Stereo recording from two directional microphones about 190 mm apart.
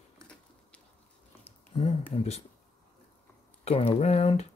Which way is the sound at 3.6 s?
30° left (ahead or behind).